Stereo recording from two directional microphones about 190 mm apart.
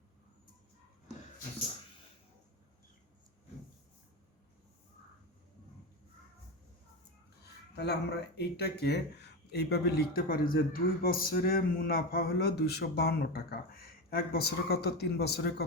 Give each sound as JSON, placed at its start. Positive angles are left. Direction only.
{"t": 7.4, "sound": "speech", "side_deg": 60}